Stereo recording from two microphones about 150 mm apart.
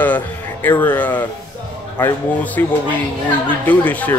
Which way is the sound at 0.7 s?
10° left (ahead or behind).